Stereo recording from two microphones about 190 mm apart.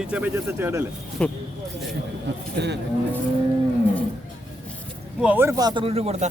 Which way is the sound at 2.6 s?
65° right (ahead or behind).